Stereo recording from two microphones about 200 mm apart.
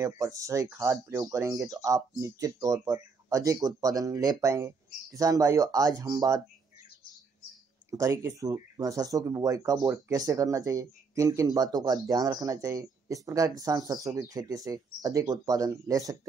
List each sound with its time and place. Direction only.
0.0 s speech: 15° right (ahead or behind)
7.9 s speech: 15° right (ahead or behind)